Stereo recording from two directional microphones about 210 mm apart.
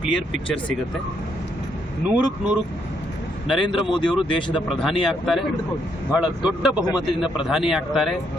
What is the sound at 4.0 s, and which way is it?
Speech, 25° left (ahead or behind).